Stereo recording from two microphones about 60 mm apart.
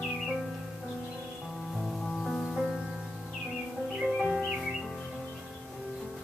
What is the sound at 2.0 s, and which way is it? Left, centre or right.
Music, centre.